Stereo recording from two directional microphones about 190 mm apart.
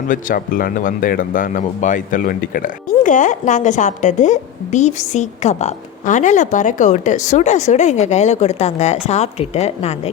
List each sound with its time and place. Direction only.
0.1 s speech: 45° left (ahead or behind)